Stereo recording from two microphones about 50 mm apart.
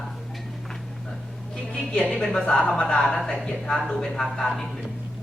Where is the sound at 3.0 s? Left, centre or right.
Centre.